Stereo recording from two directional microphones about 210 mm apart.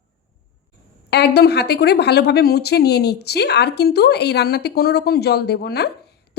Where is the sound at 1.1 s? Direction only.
50° left (ahead or behind).